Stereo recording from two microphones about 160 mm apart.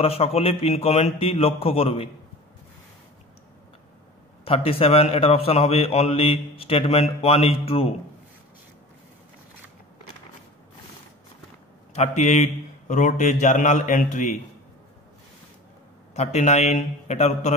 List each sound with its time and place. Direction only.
0.0 s a man's voice: 40° left (ahead or behind)
4.5 s a man's voice: 40° left (ahead or behind)
11.9 s a man's voice: 45° left (ahead or behind)
16.2 s a man's voice: 45° left (ahead or behind)